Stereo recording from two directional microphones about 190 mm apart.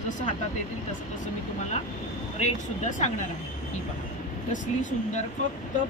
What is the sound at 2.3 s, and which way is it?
Speech, 40° left (ahead or behind).